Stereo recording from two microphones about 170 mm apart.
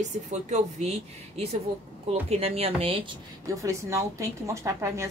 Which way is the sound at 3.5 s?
20° right (ahead or behind).